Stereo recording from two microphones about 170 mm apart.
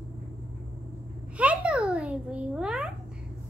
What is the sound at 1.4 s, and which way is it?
Babbling, 5° right (ahead or behind).